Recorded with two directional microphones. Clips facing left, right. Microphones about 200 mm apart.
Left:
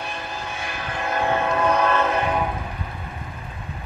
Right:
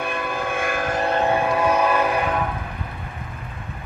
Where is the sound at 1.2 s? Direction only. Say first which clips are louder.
Left 1 dB; 15° right (ahead or behind).